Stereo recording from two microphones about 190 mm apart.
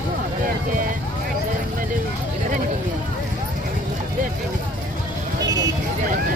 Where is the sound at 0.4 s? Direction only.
45° right (ahead or behind).